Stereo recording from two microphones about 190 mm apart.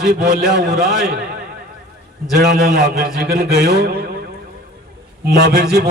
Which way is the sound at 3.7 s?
55° right (ahead or behind).